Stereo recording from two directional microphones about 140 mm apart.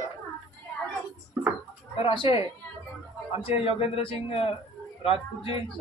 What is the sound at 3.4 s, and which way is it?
A man's voice, 40° left (ahead or behind).